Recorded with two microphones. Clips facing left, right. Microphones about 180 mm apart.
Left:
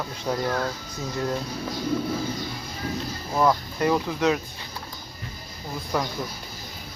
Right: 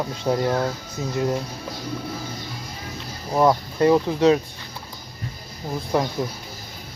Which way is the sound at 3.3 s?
25° right (ahead or behind).